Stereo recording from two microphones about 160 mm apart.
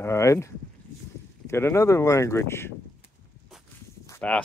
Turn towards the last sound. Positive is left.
turn(degrees=5)  # may be behind; listen again after turning